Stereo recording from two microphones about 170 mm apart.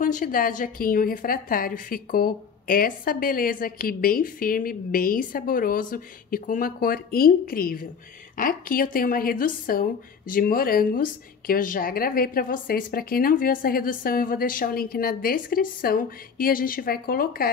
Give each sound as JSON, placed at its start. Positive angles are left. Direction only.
{"t": 0.0, "sound": "a woman's voice", "side_deg": 50}